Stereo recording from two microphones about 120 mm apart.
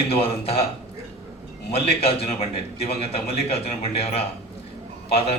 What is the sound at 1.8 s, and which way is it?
A man's voice, 55° left (ahead or behind).